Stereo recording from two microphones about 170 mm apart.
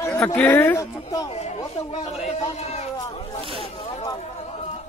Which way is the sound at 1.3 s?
40° left (ahead or behind).